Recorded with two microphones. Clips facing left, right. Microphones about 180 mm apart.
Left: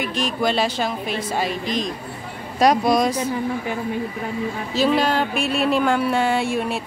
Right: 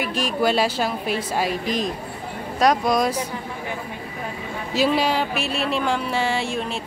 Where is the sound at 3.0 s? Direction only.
10° right (ahead or behind).